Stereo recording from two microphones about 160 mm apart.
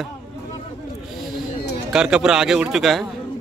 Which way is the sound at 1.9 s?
5° right (ahead or behind).